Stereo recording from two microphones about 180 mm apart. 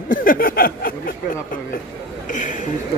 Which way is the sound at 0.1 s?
50° left (ahead or behind).